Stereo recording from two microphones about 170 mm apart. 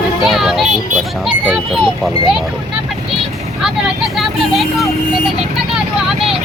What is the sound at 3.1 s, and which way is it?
Vehicle, centre (ahead or behind).